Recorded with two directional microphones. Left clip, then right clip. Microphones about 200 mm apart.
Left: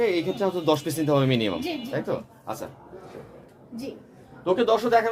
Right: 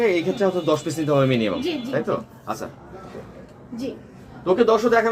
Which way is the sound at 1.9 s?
25° left (ahead or behind).